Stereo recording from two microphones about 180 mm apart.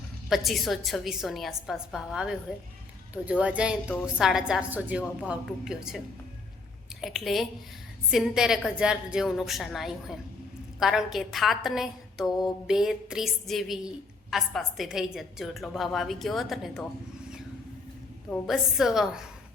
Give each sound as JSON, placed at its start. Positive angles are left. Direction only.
{"t": 0.3, "sound": "a woman's voice", "side_deg": 0}
{"t": 7.0, "sound": "a woman's voice", "side_deg": 0}
{"t": 18.3, "sound": "a woman's voice", "side_deg": 0}